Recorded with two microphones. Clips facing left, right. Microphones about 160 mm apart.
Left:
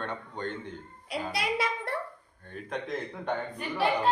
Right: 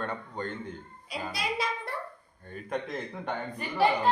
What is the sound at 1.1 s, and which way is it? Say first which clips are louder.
Speech: left 3 dB; 65° left (ahead or behind).